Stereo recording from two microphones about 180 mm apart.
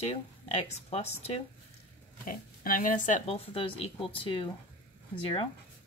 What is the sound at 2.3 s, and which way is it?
Speech, 50° left (ahead or behind).